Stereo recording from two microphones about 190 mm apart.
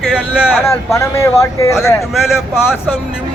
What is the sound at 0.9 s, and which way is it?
Speech, 15° left (ahead or behind).